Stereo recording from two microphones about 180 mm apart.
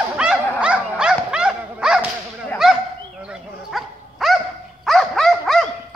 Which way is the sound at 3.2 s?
Centre (ahead or behind).